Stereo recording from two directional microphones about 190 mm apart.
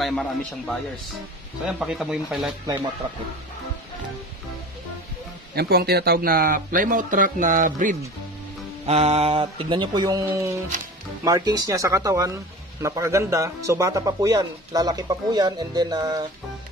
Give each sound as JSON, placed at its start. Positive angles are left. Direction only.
{"t": 0.0, "sound": "speech", "side_deg": 5}
{"t": 5.5, "sound": "speech", "side_deg": -55}
{"t": 8.8, "sound": "speech", "side_deg": -35}